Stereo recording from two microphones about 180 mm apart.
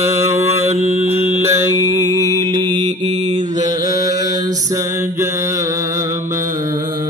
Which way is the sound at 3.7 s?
20° right (ahead or behind).